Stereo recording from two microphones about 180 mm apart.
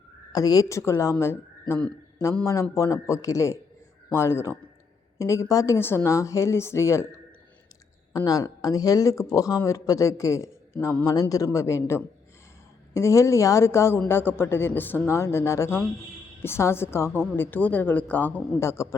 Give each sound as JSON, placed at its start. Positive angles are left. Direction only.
{"t": 0.3, "sound": "speech", "side_deg": 20}
{"t": 8.1, "sound": "speech", "side_deg": 20}